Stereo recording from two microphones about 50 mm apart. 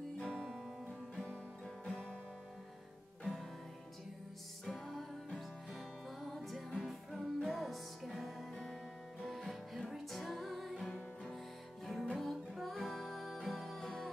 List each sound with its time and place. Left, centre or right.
0.2 s music: centre
0.5 s guitar: centre
0.8 s guitar: centre
1.9 s music: centre
4.6 s music: centre